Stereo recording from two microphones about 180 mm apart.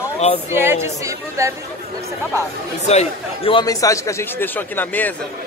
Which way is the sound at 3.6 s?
20° left (ahead or behind).